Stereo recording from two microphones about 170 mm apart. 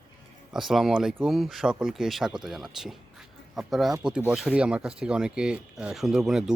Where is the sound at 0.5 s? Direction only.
Centre (ahead or behind).